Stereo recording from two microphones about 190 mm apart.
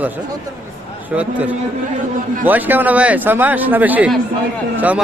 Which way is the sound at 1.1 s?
5° right (ahead or behind).